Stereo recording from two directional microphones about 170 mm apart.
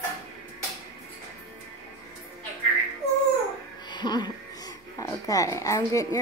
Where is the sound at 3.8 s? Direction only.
25° left (ahead or behind).